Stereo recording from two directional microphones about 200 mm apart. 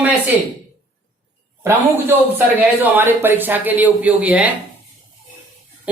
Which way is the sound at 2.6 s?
10° right (ahead or behind).